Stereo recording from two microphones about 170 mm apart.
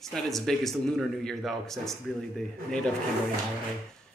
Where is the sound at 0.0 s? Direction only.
Centre (ahead or behind).